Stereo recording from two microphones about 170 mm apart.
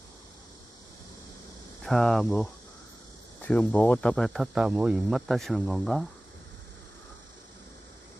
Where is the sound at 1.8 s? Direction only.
Centre (ahead or behind).